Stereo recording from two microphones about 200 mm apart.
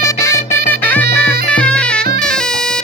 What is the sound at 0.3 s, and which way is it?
Music, 10° left (ahead or behind).